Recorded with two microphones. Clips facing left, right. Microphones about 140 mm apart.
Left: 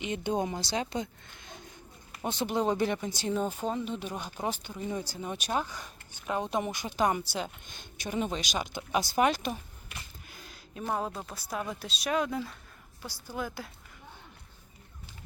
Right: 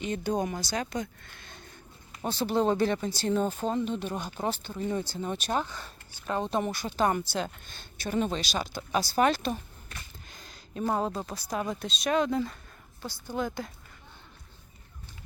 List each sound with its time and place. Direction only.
0.0 s speech: 20° left (ahead or behind)
9.5 s a sound: 5° left (ahead or behind)
10.9 s speech: centre (ahead or behind)